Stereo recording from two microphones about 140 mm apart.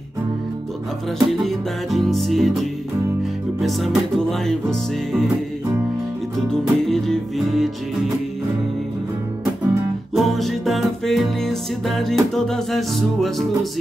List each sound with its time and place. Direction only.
1.2 s music: centre (ahead or behind)
6.3 s music: 5° left (ahead or behind)
10.1 s music: centre (ahead or behind)